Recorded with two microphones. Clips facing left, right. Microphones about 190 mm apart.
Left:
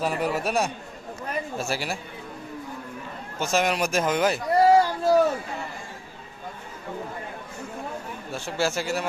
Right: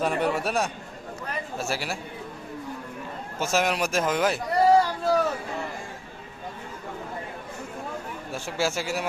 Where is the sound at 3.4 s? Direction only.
5° right (ahead or behind).